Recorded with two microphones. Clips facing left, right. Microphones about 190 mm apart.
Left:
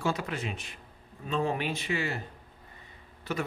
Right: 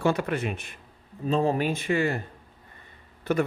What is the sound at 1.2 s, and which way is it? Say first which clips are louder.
Speech: right 6 dB; 35° right (ahead or behind).